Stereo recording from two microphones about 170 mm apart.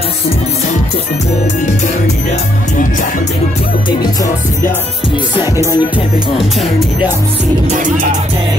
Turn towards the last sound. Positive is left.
turn(degrees=0)  # may be behind; listen again after turning